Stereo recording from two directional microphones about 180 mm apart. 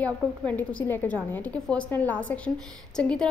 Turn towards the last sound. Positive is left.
turn(degrees=5)  # may be behind; listen again after turning